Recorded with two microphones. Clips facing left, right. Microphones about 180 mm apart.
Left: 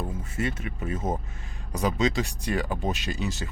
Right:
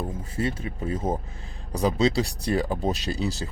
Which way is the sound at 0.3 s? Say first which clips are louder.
Right 2 dB; 30° right (ahead or behind).